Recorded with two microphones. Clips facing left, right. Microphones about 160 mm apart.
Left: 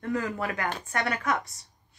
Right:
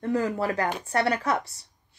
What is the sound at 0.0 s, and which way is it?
A woman's voice, 30° right (ahead or behind).